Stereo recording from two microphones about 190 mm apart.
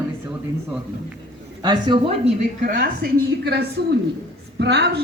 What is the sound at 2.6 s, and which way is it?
A woman's voice, 50° right (ahead or behind).